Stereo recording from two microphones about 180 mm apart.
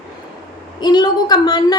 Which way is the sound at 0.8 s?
25° left (ahead or behind).